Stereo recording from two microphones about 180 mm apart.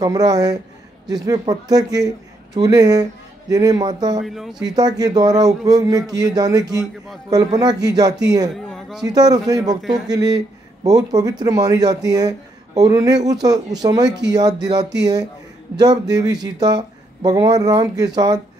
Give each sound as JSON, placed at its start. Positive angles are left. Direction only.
{"t": 0.0, "sound": "a man's voice", "side_deg": -20}
{"t": 4.2, "sound": "speech", "side_deg": 0}
{"t": 4.6, "sound": "speech", "side_deg": -20}
{"t": 8.5, "sound": "a sound", "side_deg": 0}
{"t": 9.0, "sound": "speech", "side_deg": -20}
{"t": 9.8, "sound": "speech", "side_deg": 0}
{"t": 10.0, "sound": "speech", "side_deg": -20}